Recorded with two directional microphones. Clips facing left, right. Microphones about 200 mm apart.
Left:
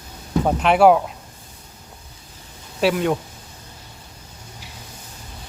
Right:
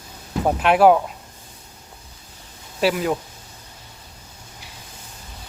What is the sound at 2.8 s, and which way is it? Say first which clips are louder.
Speech: left 1 dB; centre (ahead or behind).